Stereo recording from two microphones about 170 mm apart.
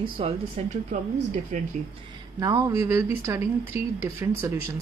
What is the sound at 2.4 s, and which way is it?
Speech, 20° right (ahead or behind).